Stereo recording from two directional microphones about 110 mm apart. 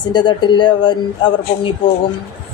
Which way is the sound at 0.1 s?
45° left (ahead or behind).